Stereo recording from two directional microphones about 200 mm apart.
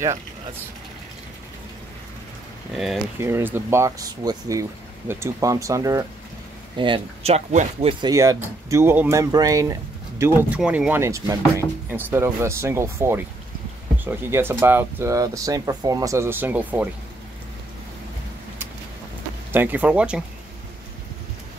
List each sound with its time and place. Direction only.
2.7 s speech: centre (ahead or behind)
3.2 s speech: 10° right (ahead or behind)
6.8 s speech: 30° right (ahead or behind)
8.1 s speech: 15° right (ahead or behind)
19.5 s speech: 10° right (ahead or behind)